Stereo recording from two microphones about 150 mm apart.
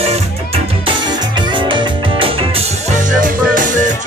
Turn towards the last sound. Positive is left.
turn(degrees=-60)  # may be behind; listen again after turning